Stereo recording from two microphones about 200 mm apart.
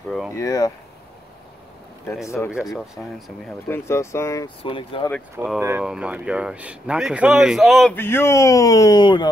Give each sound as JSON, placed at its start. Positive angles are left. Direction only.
{"t": 0.3, "sound": "speech", "side_deg": 15}
{"t": 2.2, "sound": "speech", "side_deg": 15}
{"t": 2.5, "sound": "speech", "side_deg": 0}
{"t": 3.4, "sound": "speech", "side_deg": 10}
{"t": 5.3, "sound": "speech", "side_deg": -10}